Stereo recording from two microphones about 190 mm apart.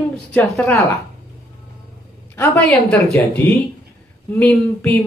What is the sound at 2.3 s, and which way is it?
A woman's voice, 10° left (ahead or behind).